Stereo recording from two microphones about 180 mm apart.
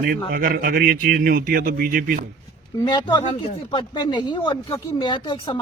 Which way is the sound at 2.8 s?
25° left (ahead or behind).